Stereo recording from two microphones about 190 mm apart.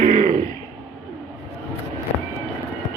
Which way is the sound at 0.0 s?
40° right (ahead or behind).